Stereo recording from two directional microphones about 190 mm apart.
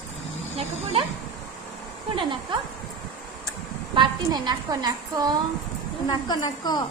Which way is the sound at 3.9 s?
25° right (ahead or behind).